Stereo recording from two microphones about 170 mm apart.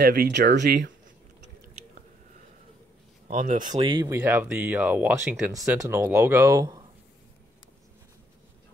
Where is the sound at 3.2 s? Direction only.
50° right (ahead or behind).